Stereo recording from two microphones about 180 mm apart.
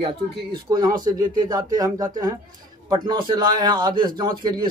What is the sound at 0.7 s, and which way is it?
A man's voice, 25° right (ahead or behind).